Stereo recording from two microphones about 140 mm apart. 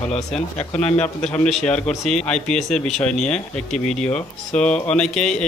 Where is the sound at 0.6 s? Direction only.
55° left (ahead or behind).